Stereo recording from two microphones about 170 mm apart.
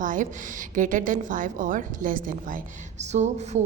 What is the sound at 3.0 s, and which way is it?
Speech, 40° right (ahead or behind).